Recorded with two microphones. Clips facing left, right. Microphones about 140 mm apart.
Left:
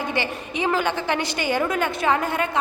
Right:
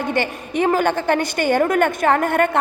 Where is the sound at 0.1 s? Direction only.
50° right (ahead or behind).